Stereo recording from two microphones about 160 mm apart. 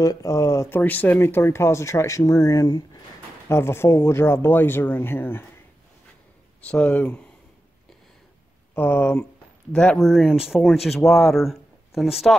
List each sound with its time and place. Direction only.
0.0 s speech: 20° left (ahead or behind)
6.7 s speech: 10° left (ahead or behind)
8.7 s speech: 10° left (ahead or behind)
11.0 s speech: 10° left (ahead or behind)
11.2 s speech: centre (ahead or behind)